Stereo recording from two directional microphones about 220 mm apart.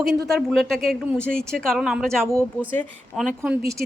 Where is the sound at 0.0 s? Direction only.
Centre (ahead or behind).